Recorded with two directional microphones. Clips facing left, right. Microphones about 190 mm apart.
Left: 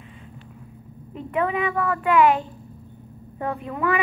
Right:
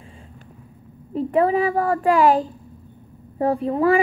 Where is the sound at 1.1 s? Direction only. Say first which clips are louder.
Right 6 dB; 35° right (ahead or behind).